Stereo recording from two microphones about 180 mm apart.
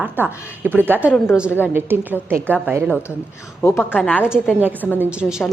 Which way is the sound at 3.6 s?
15° left (ahead or behind).